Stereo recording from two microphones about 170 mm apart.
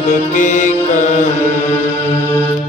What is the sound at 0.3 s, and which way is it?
Mantra, 50° left (ahead or behind).